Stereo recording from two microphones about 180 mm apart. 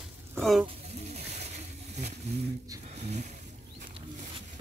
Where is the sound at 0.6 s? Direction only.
35° right (ahead or behind).